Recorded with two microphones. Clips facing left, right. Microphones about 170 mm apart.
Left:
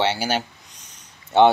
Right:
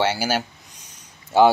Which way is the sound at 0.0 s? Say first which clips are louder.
Even; 5° right (ahead or behind).